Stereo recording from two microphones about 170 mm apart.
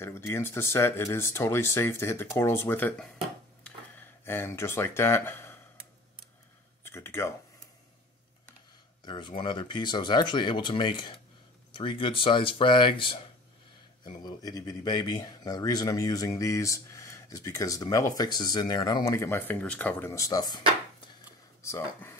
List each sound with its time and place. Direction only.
0.0 s speech: 15° left (ahead or behind)
4.2 s speech: 15° left (ahead or behind)
6.8 s speech: 15° left (ahead or behind)
9.0 s speech: 25° left (ahead or behind)